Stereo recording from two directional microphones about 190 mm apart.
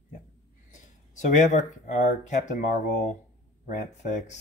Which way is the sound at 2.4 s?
40° left (ahead or behind).